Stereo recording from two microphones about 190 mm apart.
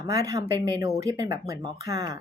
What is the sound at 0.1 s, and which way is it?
Speech, 15° right (ahead or behind).